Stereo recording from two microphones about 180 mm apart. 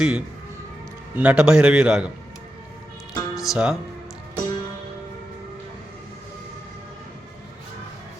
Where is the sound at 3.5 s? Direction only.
5° right (ahead or behind).